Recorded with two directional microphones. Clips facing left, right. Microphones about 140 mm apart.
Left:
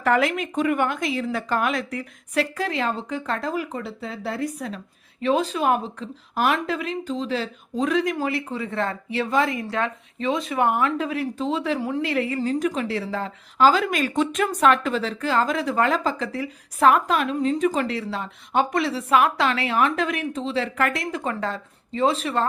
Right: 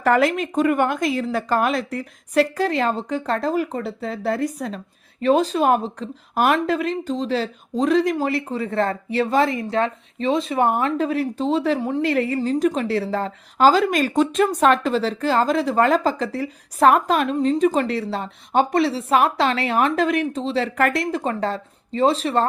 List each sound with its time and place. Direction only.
0.0 s speech: 40° right (ahead or behind)